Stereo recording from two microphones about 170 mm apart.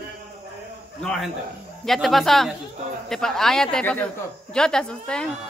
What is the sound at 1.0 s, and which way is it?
A man's voice, centre (ahead or behind).